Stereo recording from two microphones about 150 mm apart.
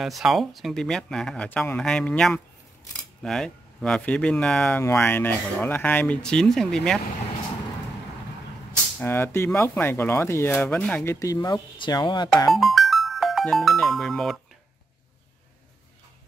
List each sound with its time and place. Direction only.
0.0 s speech: centre (ahead or behind)
9.0 s speech: 15° left (ahead or behind)
11.1 s speech: 25° left (ahead or behind)
12.5 s speech: centre (ahead or behind)